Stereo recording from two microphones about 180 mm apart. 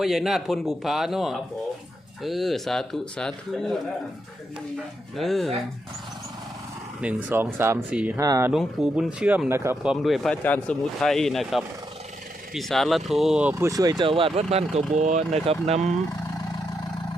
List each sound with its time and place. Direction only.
0.0 s speech: centre (ahead or behind)
5.1 s speech: centre (ahead or behind)
7.0 s speech: 10° right (ahead or behind)
8.5 s speech: 5° right (ahead or behind)
13.5 s speech: 15° right (ahead or behind); by 15.8 s 35° right (ahead or behind)